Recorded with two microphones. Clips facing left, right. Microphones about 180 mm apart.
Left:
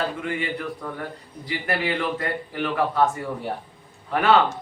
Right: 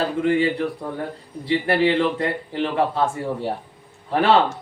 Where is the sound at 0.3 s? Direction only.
30° right (ahead or behind).